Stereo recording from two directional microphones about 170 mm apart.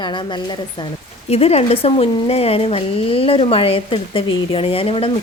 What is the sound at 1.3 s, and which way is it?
Speech, 35° left (ahead or behind).